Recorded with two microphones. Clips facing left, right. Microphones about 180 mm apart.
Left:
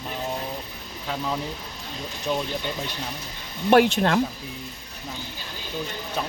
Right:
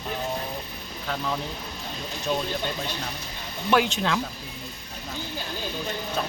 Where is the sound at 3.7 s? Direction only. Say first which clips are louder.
Left 5 dB; 55° left (ahead or behind).